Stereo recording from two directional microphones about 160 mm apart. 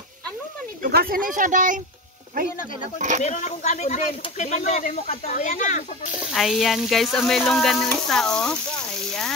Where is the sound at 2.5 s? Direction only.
60° left (ahead or behind).